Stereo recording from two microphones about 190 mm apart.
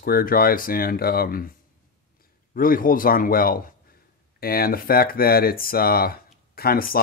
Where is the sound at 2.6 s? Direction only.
45° left (ahead or behind).